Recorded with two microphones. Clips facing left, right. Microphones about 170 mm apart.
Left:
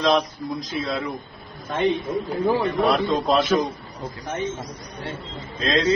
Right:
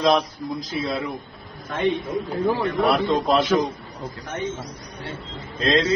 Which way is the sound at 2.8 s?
Centre (ahead or behind).